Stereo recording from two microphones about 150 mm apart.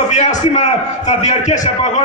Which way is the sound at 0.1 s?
50° left (ahead or behind).